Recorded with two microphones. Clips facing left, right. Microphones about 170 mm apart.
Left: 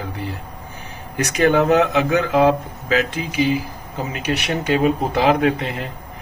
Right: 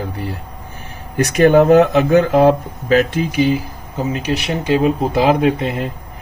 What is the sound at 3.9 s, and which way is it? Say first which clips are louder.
Speech: right 4 dB; 25° right (ahead or behind).